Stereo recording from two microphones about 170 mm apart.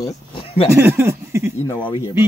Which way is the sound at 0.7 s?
15° right (ahead or behind).